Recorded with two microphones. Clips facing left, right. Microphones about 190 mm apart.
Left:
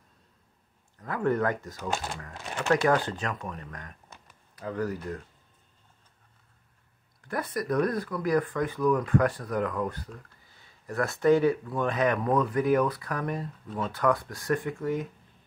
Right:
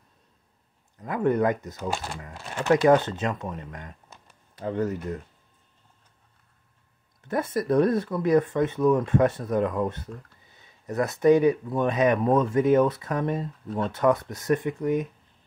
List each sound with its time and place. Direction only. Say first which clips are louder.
0.9 s speech: right 3 dB; 20° right (ahead or behind)
7.2 s speech: right 5 dB; 25° right (ahead or behind)
13.7 s speech: right 4 dB; centre (ahead or behind)
13.9 s speech: right 4 dB; 20° right (ahead or behind)